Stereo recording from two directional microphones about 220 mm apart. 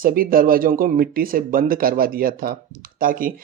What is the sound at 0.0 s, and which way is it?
Speech, 40° right (ahead or behind).